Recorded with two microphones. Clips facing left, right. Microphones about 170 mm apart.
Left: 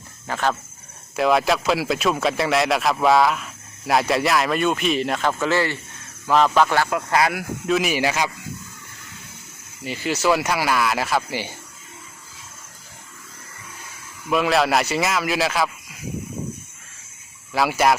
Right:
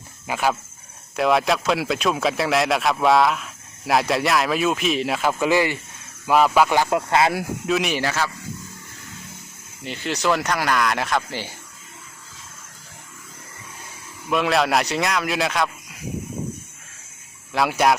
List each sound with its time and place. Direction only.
0.3 s speech: 10° right (ahead or behind)
1.1 s speech: centre (ahead or behind)
6.9 s speech: 25° right (ahead or behind)
7.7 s speech: centre (ahead or behind)
9.8 s speech: 5° left (ahead or behind)
14.3 s speech: centre (ahead or behind)
17.5 s speech: centre (ahead or behind)